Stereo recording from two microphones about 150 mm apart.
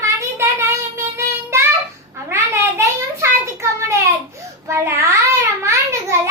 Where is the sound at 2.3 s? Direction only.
20° right (ahead or behind).